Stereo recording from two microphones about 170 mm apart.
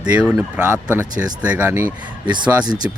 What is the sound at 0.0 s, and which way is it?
Speech, 5° right (ahead or behind).